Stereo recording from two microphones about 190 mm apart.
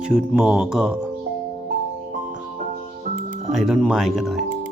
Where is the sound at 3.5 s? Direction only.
Centre (ahead or behind).